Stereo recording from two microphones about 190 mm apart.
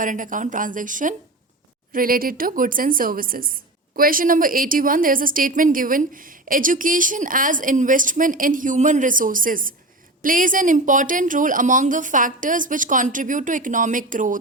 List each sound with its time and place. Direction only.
0.0 s speech: 45° right (ahead or behind)